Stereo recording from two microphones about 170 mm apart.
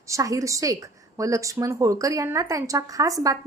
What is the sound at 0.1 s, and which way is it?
A woman's voice, 20° right (ahead or behind).